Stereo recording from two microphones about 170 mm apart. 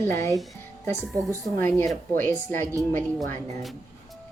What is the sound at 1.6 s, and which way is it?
Speech, 10° left (ahead or behind).